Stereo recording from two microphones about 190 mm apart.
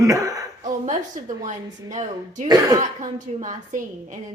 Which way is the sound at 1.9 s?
40° right (ahead or behind).